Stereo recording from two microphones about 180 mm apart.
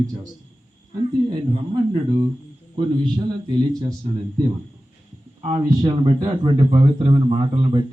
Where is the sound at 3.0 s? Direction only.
25° right (ahead or behind).